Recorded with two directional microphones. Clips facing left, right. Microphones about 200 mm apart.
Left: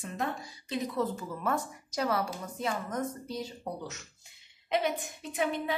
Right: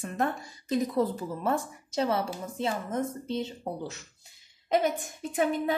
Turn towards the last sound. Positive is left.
turn(degrees=-45)  # may be behind; listen again after turning